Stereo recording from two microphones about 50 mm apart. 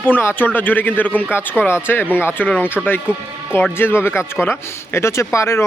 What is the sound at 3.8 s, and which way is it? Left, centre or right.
Speech, left.